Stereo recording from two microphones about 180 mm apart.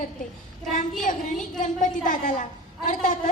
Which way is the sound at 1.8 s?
45° left (ahead or behind).